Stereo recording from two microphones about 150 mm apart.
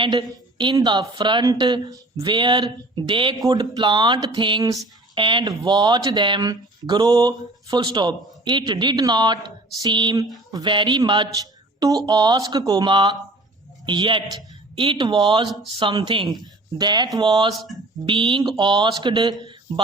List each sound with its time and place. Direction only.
0.0 s speech: 30° right (ahead or behind)
17.5 s speech: centre (ahead or behind)
18.0 s speech: 35° right (ahead or behind)